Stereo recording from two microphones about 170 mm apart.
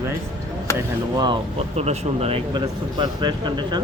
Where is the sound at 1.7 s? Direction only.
40° right (ahead or behind).